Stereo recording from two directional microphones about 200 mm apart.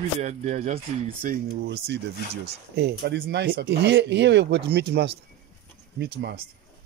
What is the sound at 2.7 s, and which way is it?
Speech, 55° right (ahead or behind).